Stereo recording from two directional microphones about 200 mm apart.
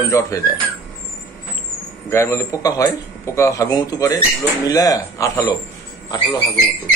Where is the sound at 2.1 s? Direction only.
15° left (ahead or behind).